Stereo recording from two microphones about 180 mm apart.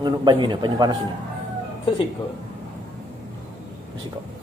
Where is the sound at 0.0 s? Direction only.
25° right (ahead or behind).